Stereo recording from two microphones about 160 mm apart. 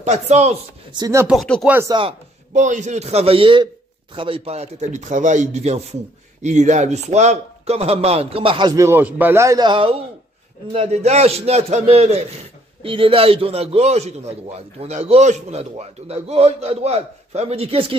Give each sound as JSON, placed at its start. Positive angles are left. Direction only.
{"t": 0.0, "sound": "speech", "side_deg": -45}
{"t": 0.9, "sound": "speech", "side_deg": -25}
{"t": 1.2, "sound": "speech", "side_deg": 0}
{"t": 1.9, "sound": "a man's voice", "side_deg": -30}
{"t": 2.5, "sound": "a man's voice", "side_deg": -50}
{"t": 8.8, "sound": "a man's voice", "side_deg": -15}